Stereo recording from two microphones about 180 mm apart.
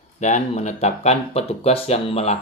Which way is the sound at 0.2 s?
40° left (ahead or behind).